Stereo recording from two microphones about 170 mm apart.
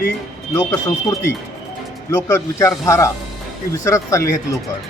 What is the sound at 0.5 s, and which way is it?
Speech, 20° left (ahead or behind).